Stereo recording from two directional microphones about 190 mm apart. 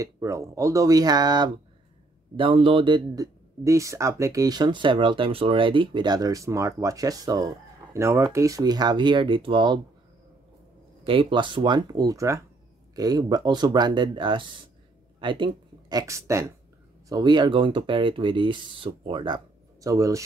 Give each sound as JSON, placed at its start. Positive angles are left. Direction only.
{"t": 0.0, "sound": "a man's voice", "side_deg": -15}
{"t": 11.1, "sound": "a man's voice", "side_deg": -25}